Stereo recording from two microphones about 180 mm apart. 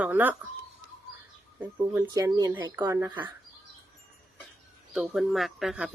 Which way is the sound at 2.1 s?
20° right (ahead or behind).